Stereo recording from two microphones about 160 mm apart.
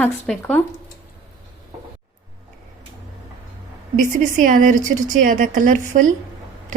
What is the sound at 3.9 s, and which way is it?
A woman's voice, 55° right (ahead or behind).